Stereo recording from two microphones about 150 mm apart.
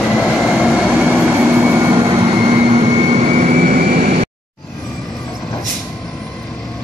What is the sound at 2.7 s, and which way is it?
Vehicle, 40° right (ahead or behind).